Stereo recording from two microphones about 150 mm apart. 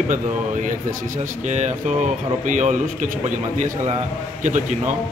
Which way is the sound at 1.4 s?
50° right (ahead or behind).